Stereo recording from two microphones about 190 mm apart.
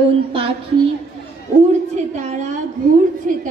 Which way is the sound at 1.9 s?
35° right (ahead or behind).